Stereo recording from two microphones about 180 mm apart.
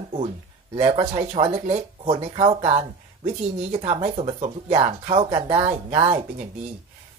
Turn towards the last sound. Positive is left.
turn(degrees=-30)  # may be behind; listen again after turning